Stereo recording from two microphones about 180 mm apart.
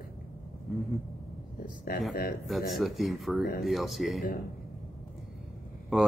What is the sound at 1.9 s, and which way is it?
Speech, 55° left (ahead or behind).